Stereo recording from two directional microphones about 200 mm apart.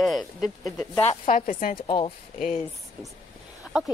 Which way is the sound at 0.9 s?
35° left (ahead or behind).